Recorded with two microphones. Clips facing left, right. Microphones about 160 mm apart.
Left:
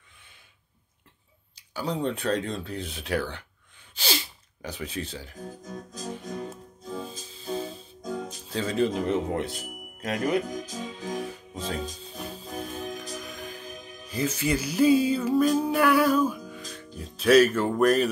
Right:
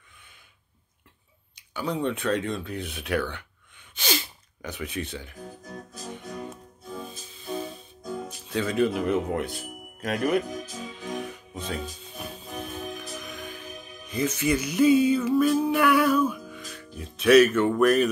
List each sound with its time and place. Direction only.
1.5 s speech: 35° left (ahead or behind)
3.9 s sneeze: 30° left (ahead or behind)
5.1 s speech: 35° left (ahead or behind)
6.0 s music: 30° left (ahead or behind)
8.3 s speech: 30° left (ahead or behind)
12.0 s music: 30° left (ahead or behind)